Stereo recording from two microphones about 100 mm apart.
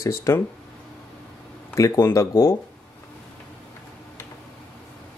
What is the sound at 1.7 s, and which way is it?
Speech, 30° left (ahead or behind).